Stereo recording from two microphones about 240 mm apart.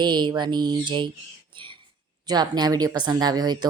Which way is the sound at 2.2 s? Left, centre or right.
Centre.